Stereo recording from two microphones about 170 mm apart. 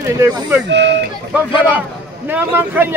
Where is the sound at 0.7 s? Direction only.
90° right.